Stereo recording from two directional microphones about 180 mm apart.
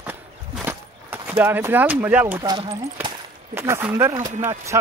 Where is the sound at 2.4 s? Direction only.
25° right (ahead or behind).